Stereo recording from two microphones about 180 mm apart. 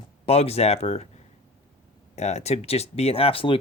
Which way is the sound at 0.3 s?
35° left (ahead or behind).